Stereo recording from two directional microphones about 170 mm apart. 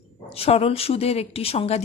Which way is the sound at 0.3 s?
35° left (ahead or behind).